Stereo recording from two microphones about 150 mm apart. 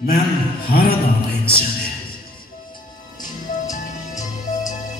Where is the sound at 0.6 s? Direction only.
85° left.